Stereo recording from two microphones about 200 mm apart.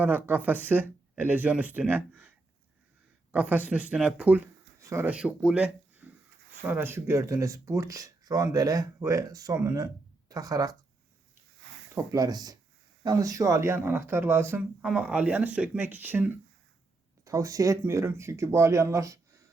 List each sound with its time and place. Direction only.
0.0 s speech: 10° right (ahead or behind)
3.3 s speech: 10° right (ahead or behind)
11.9 s speech: 20° right (ahead or behind)